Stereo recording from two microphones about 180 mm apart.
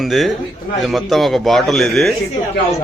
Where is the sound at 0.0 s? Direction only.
Centre (ahead or behind).